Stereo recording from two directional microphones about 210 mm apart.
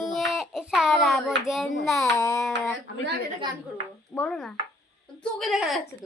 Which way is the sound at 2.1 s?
15° left (ahead or behind).